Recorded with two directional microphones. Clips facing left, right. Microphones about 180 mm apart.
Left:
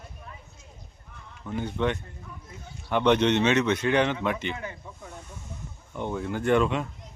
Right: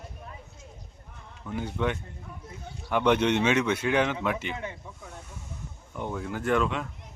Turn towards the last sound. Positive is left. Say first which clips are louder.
# left 3 dB
turn(degrees=0)  # may be behind; listen again after turning